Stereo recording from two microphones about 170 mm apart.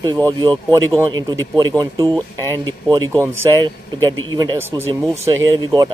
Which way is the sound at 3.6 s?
25° right (ahead or behind).